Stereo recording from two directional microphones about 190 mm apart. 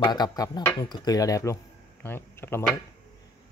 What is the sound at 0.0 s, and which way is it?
Speech, 20° left (ahead or behind).